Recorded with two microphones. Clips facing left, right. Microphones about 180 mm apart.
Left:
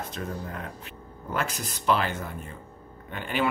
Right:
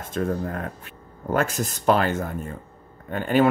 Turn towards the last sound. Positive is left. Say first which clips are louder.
# right 9 dB
turn(degrees=-45)  # may be behind; listen again after turning